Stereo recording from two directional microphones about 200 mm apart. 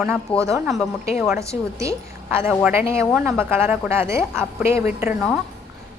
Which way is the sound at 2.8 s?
15° right (ahead or behind).